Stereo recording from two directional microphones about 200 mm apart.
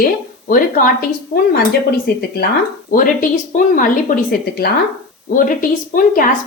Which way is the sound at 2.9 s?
40° left (ahead or behind).